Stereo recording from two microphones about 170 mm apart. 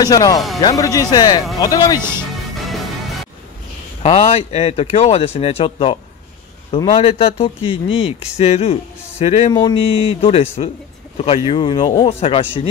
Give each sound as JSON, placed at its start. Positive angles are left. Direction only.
{"t": 0.0, "sound": "speech", "side_deg": 20}
{"t": 2.0, "sound": "speech", "side_deg": -15}
{"t": 4.0, "sound": "speech", "side_deg": 35}
{"t": 9.5, "sound": "speech", "side_deg": 25}